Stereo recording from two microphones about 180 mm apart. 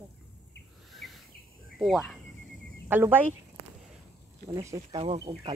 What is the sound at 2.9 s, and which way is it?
Speech, 10° right (ahead or behind).